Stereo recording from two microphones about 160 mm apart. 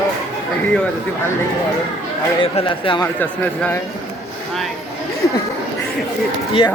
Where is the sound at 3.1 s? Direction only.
10° left (ahead or behind).